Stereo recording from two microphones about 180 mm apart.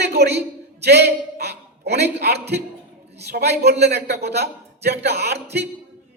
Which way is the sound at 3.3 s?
65° right (ahead or behind).